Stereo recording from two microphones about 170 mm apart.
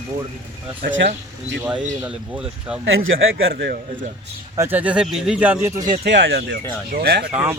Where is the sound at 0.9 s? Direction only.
90° right.